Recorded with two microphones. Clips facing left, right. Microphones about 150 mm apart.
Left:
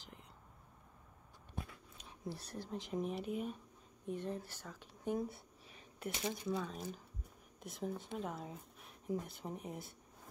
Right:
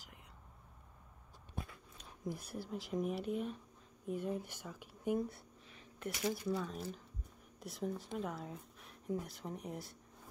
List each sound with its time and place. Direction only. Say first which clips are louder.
2.2 s speech: right 2 dB; 10° right (ahead or behind)
6.1 s speech: right 4 dB; 20° left (ahead or behind)
6.5 s speech: right 1 dB; centre (ahead or behind)